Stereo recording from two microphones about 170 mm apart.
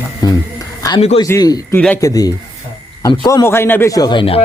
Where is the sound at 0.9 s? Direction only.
30° left (ahead or behind).